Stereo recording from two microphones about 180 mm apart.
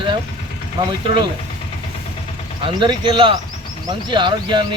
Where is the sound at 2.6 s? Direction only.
25° right (ahead or behind).